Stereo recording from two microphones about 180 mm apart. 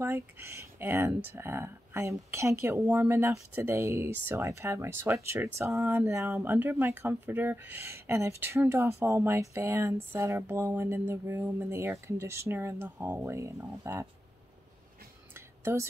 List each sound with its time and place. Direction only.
0.0 s speech: 15° right (ahead or behind)
15.3 s whispering: 15° right (ahead or behind)